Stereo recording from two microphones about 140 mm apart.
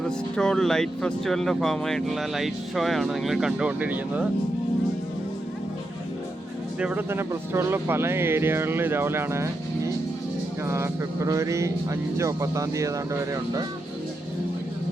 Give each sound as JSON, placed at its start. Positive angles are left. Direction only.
{"t": 0.0, "sound": "speech", "side_deg": 5}
{"t": 6.7, "sound": "speech", "side_deg": -10}